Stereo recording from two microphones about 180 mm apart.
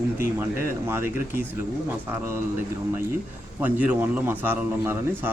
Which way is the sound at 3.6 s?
10° right (ahead or behind).